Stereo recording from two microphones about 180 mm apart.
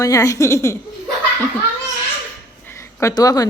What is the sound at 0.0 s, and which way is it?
Speech, 20° left (ahead or behind).